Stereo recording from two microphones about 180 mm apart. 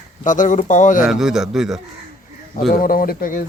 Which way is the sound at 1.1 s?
5° right (ahead or behind).